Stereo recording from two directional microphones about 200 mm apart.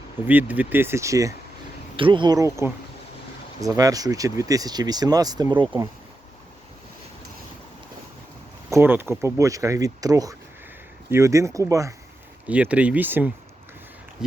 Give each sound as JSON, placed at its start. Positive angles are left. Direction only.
{"t": 0.3, "sound": "speech", "side_deg": -10}
{"t": 8.7, "sound": "speech", "side_deg": -10}
{"t": 14.2, "sound": "a sound", "side_deg": -5}